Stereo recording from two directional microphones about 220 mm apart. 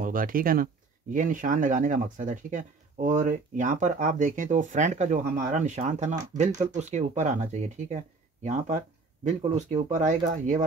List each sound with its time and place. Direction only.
0.0 s speech: 40° right (ahead or behind)
9.2 s speech: 30° right (ahead or behind)